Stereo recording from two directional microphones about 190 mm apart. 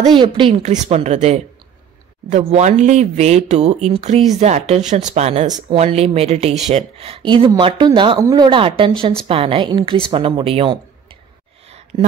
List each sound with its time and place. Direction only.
0.0 s speech: 25° right (ahead or behind)
2.5 s a woman's voice: 40° right (ahead or behind)